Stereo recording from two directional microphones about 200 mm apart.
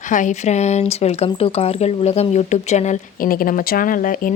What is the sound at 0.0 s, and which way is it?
Speech, 40° left (ahead or behind).